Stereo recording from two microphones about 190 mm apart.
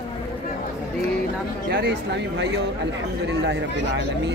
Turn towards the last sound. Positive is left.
turn(degrees=-65)  # may be behind; listen again after turning